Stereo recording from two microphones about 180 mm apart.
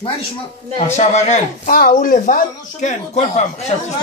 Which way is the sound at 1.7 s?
55° left (ahead or behind).